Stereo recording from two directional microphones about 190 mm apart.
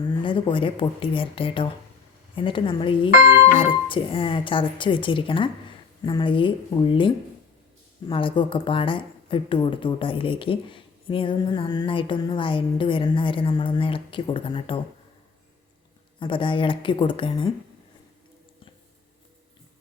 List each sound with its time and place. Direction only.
0.0 s a woman's voice: 25° left (ahead or behind)
3.2 s speech: 15° right (ahead or behind)
3.5 s a woman's voice: 25° left (ahead or behind)
16.2 s a woman's voice: 25° left (ahead or behind)